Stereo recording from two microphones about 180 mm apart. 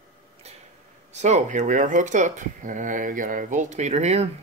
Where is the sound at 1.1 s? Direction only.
40° right (ahead or behind).